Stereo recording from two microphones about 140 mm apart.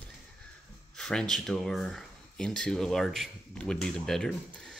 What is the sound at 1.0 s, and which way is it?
Speech, 5° left (ahead or behind).